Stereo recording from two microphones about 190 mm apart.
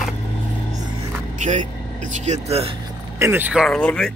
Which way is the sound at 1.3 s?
40° right (ahead or behind).